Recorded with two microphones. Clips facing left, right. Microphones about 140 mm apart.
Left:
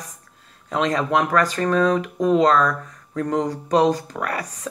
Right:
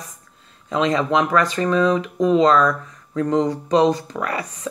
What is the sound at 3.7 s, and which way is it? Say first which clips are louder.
Speech: right 1 dB; 40° left (ahead or behind).